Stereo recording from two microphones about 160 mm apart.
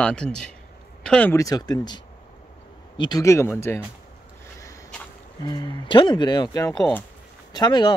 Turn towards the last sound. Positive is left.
turn(degrees=25)  # may be behind; listen again after turning